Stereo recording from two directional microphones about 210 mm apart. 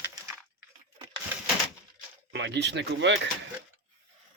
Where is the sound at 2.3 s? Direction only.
55° right (ahead or behind).